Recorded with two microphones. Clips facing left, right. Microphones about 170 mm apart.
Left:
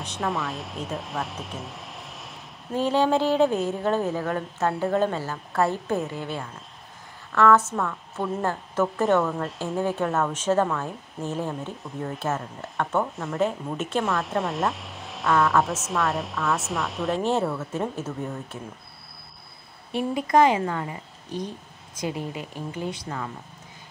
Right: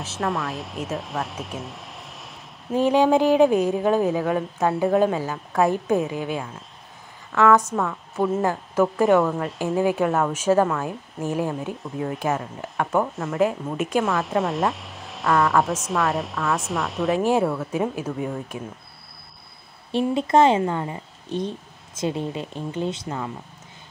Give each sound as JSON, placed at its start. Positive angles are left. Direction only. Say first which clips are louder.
{"t": 0.0, "sound": "speech", "louder": "right 2 dB", "side_deg": 0}
{"t": 2.7, "sound": "a woman's voice", "louder": "right 4 dB", "side_deg": -15}
{"t": 19.9, "sound": "speech", "louder": "right 3 dB", "side_deg": -25}